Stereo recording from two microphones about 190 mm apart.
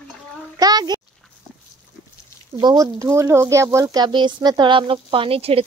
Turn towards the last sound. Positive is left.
turn(degrees=-30)  # may be behind; listen again after turning